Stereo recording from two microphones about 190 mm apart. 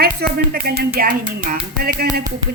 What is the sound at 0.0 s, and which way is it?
Speech, 55° right (ahead or behind).